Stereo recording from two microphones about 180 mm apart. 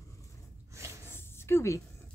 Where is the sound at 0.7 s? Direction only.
15° right (ahead or behind).